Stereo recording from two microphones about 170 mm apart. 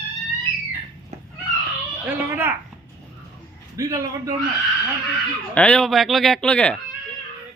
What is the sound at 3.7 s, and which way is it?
Speech, 20° right (ahead or behind).